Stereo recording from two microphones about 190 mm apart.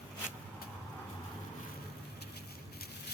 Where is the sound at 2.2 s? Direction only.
60° left (ahead or behind).